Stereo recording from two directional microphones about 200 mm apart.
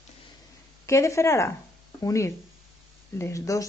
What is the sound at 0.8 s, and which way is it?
Speech, 15° left (ahead or behind).